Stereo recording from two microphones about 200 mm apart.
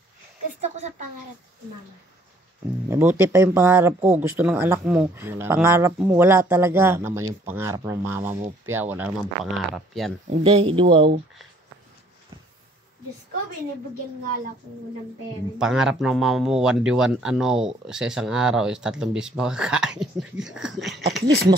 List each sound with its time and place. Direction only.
0.6 s a woman's voice: 35° right (ahead or behind)
2.9 s speech: 10° right (ahead or behind)
10.3 s speech: 30° right (ahead or behind)
15.6 s speech: 5° right (ahead or behind)